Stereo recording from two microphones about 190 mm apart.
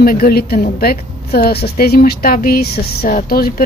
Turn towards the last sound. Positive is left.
turn(degrees=50)  # may be behind; listen again after turning